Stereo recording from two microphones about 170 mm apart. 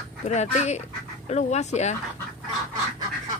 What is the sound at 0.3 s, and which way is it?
Speech, 40° left (ahead or behind).